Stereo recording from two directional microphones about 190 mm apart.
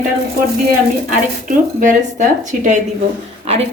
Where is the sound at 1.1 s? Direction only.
45° right (ahead or behind).